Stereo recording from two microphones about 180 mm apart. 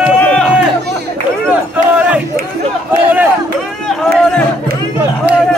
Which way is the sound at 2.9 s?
10° right (ahead or behind).